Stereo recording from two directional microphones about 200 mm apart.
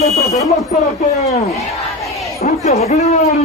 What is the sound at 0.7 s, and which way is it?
Speech, 40° left (ahead or behind).